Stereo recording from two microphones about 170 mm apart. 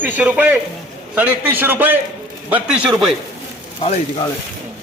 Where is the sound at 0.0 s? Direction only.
10° right (ahead or behind).